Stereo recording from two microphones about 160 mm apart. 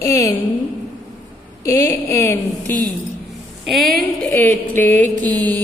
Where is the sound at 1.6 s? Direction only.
20° left (ahead or behind).